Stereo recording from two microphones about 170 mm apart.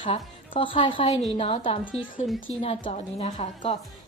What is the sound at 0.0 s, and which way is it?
A woman's voice, 30° left (ahead or behind).